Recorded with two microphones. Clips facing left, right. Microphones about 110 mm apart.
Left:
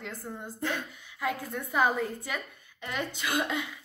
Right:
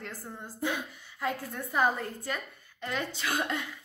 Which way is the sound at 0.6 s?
15° right (ahead or behind).